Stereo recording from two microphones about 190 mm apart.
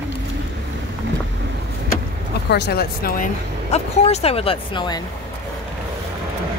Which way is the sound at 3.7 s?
35° left (ahead or behind).